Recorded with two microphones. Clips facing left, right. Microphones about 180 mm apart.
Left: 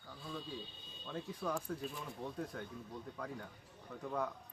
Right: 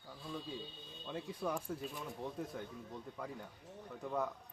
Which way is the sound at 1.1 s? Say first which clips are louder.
Even; 15° right (ahead or behind).